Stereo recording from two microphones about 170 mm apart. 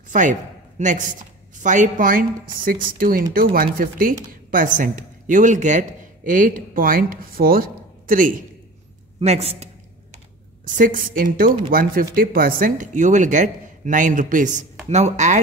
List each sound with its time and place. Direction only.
0.1 s a sound: 50° right (ahead or behind)
1.5 s a woman's voice: 45° right (ahead or behind)
9.2 s a man's voice: 40° right (ahead or behind)
10.6 s speech: 50° right (ahead or behind)